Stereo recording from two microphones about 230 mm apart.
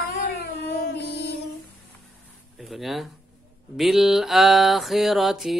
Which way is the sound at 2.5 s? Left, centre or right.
Centre.